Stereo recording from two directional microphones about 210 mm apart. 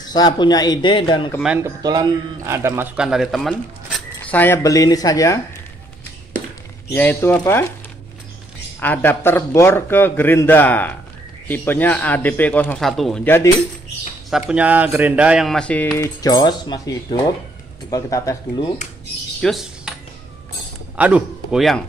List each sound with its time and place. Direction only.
0.1 s speech: 20° left (ahead or behind)
1.4 s speech: 5° right (ahead or behind)
1.8 s speech: 20° right (ahead or behind); by 5.4 s 15° left (ahead or behind)
6.9 s a man's voice: 10° left (ahead or behind)
8.7 s a man's voice: 10° left (ahead or behind)
14.5 s a man's voice: 5° right (ahead or behind); by 18.7 s 15° left (ahead or behind)
19.4 s cutlery: centre (ahead or behind)
20.9 s a man's voice: 5° right (ahead or behind)